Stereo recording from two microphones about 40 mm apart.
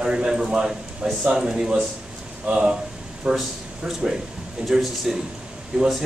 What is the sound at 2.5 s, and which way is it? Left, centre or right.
Speech, right.